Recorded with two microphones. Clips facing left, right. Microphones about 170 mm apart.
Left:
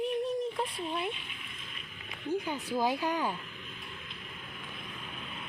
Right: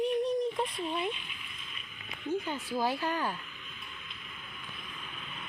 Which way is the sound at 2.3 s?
15° left (ahead or behind).